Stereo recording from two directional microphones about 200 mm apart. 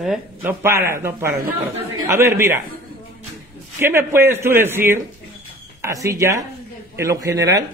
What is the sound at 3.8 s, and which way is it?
A man's voice, 10° right (ahead or behind).